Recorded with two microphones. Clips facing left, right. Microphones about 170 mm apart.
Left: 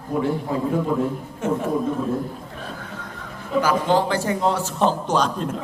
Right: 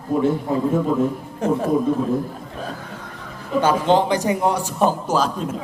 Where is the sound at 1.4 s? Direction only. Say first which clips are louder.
Right 3 dB; 35° right (ahead or behind).